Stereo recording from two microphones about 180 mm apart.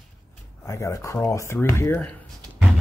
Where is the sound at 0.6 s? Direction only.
15° left (ahead or behind).